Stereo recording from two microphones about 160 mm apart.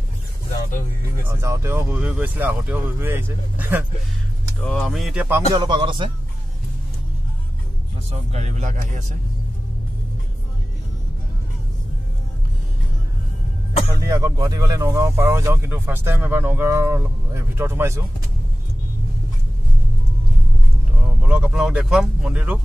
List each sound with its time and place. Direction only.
1.2 s speech: 15° right (ahead or behind)
4.6 s speech: centre (ahead or behind)
5.5 s speech: 30° right (ahead or behind)
8.1 s speech: 45° right (ahead or behind)
14.0 s speech: 20° right (ahead or behind)
21.2 s speech: 5° right (ahead or behind)